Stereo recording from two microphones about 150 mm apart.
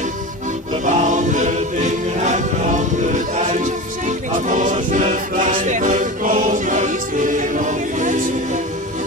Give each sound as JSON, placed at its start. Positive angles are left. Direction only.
{"t": 0.8, "sound": "music", "side_deg": -55}